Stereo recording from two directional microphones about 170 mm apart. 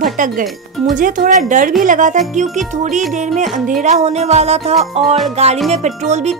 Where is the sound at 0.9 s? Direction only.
50° right (ahead or behind).